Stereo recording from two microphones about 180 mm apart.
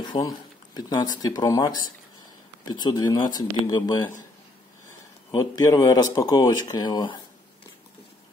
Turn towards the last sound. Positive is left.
turn(degrees=25)  # may be behind; listen again after turning